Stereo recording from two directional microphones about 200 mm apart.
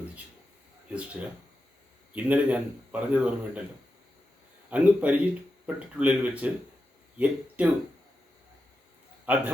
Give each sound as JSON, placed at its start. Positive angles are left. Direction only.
{"t": 0.9, "sound": "a man's voice", "side_deg": -5}
{"t": 4.7, "sound": "a man's voice", "side_deg": -5}
{"t": 9.2, "sound": "a man's voice", "side_deg": -10}